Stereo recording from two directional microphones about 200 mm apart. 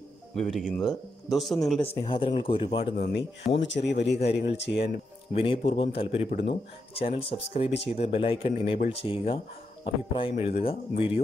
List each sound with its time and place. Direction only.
0.4 s speech: centre (ahead or behind)
2.0 s speech: 25° left (ahead or behind)
3.0 s speech: 55° left (ahead or behind)
4.8 s a man's voice: 30° left (ahead or behind)